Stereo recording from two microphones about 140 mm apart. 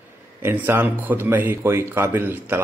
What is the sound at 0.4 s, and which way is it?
Speech, 15° right (ahead or behind).